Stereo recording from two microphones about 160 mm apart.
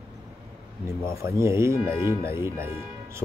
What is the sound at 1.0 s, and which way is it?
Speech, 15° right (ahead or behind).